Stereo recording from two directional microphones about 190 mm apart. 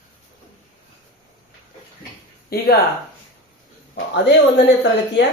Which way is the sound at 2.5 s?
55° left (ahead or behind).